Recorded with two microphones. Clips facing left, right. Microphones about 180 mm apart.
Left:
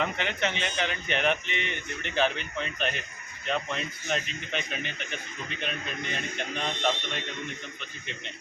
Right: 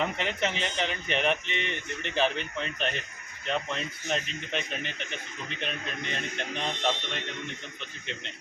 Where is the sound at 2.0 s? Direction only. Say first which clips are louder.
Even; centre (ahead or behind).